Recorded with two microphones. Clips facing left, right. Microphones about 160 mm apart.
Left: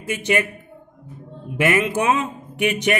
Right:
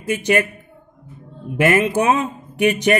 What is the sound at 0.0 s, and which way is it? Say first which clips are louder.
Speech: right 3 dB; 40° right (ahead or behind).